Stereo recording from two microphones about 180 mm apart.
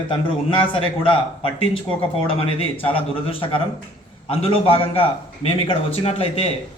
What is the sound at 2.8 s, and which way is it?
A man's voice, 30° left (ahead or behind).